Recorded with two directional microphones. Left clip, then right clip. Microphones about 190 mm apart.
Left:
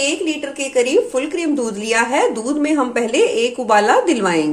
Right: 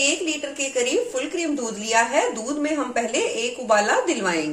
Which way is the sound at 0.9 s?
40° left (ahead or behind).